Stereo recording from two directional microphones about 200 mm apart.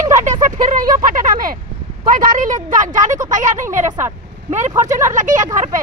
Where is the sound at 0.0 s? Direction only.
40° right (ahead or behind).